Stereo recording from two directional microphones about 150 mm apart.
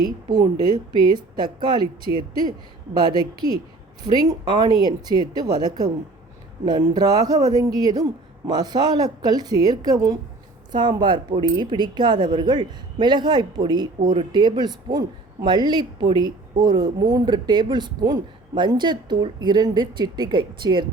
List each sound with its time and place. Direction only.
0.0 s speech: 25° right (ahead or behind)
2.9 s speech: 30° right (ahead or behind)